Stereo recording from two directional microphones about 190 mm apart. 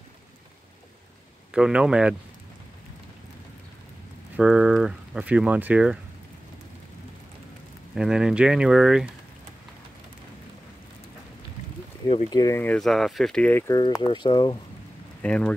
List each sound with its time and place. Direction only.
1.5 s speech: 5° right (ahead or behind)
4.4 s speech: 5° right (ahead or behind)
7.9 s speech: 5° right (ahead or behind)
12.1 s speech: 20° left (ahead or behind)
15.2 s speech: 5° left (ahead or behind)